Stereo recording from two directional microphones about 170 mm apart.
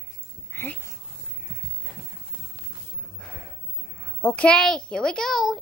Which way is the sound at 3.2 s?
5° left (ahead or behind).